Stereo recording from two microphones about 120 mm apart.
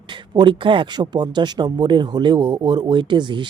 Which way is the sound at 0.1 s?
40° right (ahead or behind).